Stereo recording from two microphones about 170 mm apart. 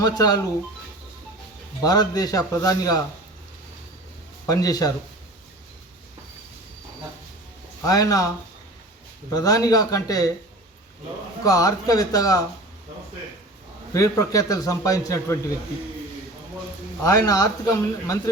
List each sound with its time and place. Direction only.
0.0 s a man's voice: 20° left (ahead or behind)
1.8 s a man's voice: 20° left (ahead or behind)
4.4 s a man's voice: 20° left (ahead or behind)
7.9 s a man's voice: 20° left (ahead or behind)
9.3 s a man's voice: 20° left (ahead or behind)
11.4 s a man's voice: 20° left (ahead or behind)
13.9 s a man's voice: 20° left (ahead or behind)
17.0 s a man's voice: 20° left (ahead or behind)